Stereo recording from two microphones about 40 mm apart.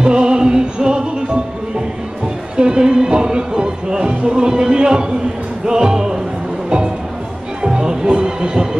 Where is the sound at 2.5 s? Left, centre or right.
Right.